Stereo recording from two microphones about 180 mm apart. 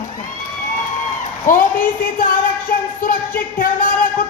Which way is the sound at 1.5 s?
50° left (ahead or behind).